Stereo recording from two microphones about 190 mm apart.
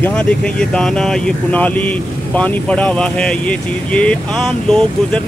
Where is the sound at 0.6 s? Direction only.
5° left (ahead or behind).